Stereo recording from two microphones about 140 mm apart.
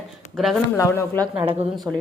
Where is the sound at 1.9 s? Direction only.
10° right (ahead or behind).